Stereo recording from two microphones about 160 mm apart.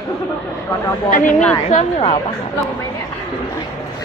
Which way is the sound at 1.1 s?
55° left (ahead or behind).